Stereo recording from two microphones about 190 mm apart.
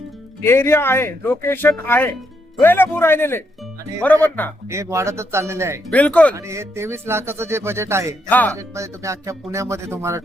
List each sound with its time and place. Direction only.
0.4 s speech: 15° left (ahead or behind)
4.7 s speech: 15° right (ahead or behind)
5.9 s speech: 5° left (ahead or behind)
6.3 s speech: 15° right (ahead or behind)
8.3 s speech: 10° left (ahead or behind)
8.5 s speech: 15° right (ahead or behind)